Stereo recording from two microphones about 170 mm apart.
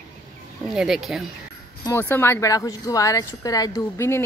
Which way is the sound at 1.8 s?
15° left (ahead or behind).